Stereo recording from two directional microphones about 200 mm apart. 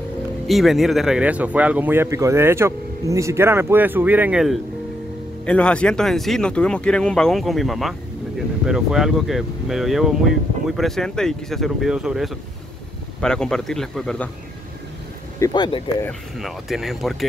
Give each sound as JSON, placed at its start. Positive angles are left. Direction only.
{"t": 0.5, "sound": "speech", "side_deg": 0}
{"t": 15.3, "sound": "speech", "side_deg": 20}
{"t": 16.1, "sound": "speech", "side_deg": 0}